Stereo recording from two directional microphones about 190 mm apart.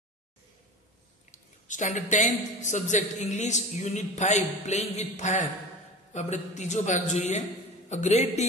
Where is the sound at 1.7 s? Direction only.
40° left (ahead or behind).